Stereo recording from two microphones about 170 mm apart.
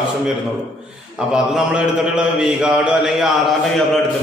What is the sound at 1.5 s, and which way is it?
A man's voice, 5° right (ahead or behind).